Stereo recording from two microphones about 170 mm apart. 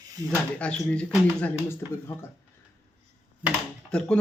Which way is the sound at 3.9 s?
5° left (ahead or behind).